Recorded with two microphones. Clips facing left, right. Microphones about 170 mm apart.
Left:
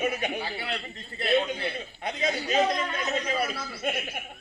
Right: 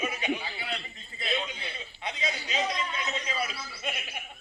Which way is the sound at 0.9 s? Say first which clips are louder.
Left 12 dB; 65° left (ahead or behind).